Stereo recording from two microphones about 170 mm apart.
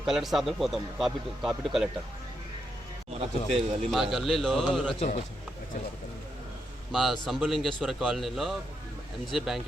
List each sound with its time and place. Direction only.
0.0 s a man's voice: centre (ahead or behind)
3.1 s a man's voice: 35° right (ahead or behind)
3.8 s a man's voice: centre (ahead or behind)
4.9 s a man's voice: 40° left (ahead or behind)
6.9 s a man's voice: centre (ahead or behind)